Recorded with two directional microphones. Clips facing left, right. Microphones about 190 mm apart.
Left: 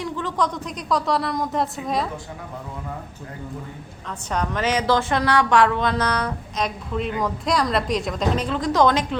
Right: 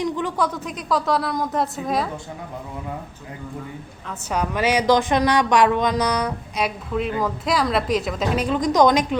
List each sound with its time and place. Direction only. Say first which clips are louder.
0.0 s a woman's voice: right 2 dB; 15° right (ahead or behind)
4.3 s a woman's voice: right 2 dB; 10° right (ahead or behind)
8.4 s a woman's voice: right 3 dB; 15° right (ahead or behind)